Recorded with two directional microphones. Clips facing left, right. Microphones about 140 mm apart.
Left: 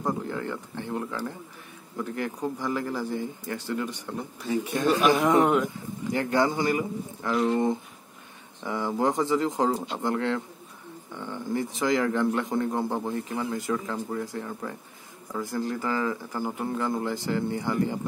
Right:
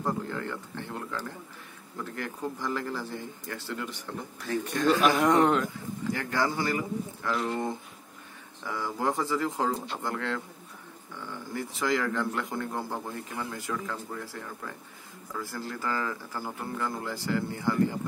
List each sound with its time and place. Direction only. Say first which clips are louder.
0.0 s a man's voice: left 2 dB; 15° left (ahead or behind)